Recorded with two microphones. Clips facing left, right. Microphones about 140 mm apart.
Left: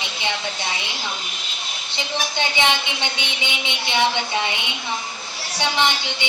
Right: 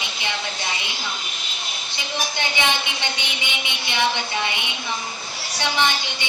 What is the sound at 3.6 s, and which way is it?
Speech, 20° left (ahead or behind).